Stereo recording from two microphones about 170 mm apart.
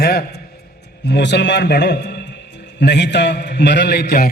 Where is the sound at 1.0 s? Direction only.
85° left.